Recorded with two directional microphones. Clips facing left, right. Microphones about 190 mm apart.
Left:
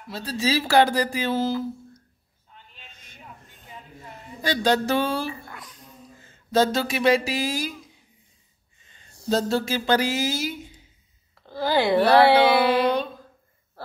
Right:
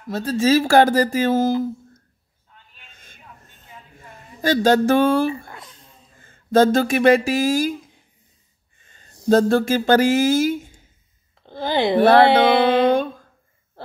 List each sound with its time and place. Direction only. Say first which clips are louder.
0.1 s speech: right 8 dB; 50° right (ahead or behind)
2.9 s a sound: right 1 dB; 50° right (ahead or behind)
4.4 s speech: right 6 dB; 45° right (ahead or behind)
5.5 s a sound: right 2 dB; 25° right (ahead or behind)
6.1 s speech: right 5 dB; 50° right (ahead or behind)
8.7 s a sound: right 3 dB; 50° right (ahead or behind)
9.3 s speech: right 7 dB; 55° right (ahead or behind)
11.4 s speech: right 1 dB; 20° right (ahead or behind)
12.3 s music: right 2 dB; 25° right (ahead or behind)
13.8 s owl: right 1 dB; 20° right (ahead or behind)